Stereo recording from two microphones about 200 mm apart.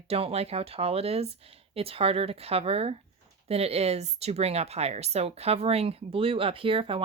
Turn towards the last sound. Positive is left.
turn(degrees=-25)  # may be behind; listen again after turning